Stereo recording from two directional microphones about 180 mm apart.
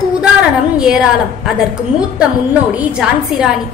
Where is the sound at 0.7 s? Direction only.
5° right (ahead or behind).